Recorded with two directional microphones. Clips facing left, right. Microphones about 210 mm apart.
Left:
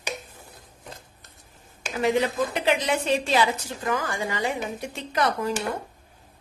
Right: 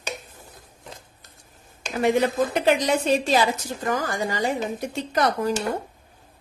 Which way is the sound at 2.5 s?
40° right (ahead or behind).